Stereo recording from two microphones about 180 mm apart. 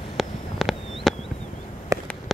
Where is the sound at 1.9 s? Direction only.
20° right (ahead or behind).